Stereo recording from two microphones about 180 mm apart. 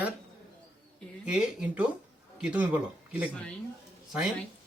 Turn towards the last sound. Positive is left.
turn(degrees=-5)  # may be behind; listen again after turning